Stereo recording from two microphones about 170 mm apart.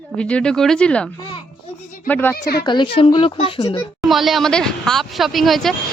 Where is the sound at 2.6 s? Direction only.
30° left (ahead or behind).